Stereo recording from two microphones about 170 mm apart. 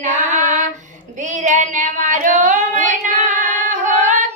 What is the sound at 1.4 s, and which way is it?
Child singing, 45° right (ahead or behind).